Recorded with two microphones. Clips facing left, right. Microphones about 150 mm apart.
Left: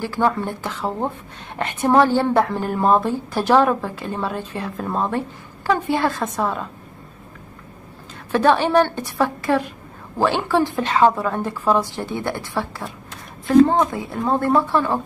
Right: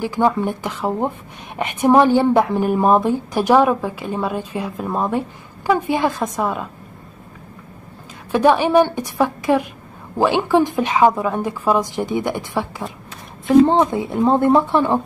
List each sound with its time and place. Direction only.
0.0 s a woman's voice: 15° right (ahead or behind)
8.3 s a woman's voice: 10° right (ahead or behind)
13.8 s speech: 20° right (ahead or behind)